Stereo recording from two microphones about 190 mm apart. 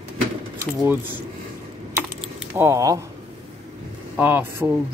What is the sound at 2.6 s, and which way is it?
Speech, 15° right (ahead or behind).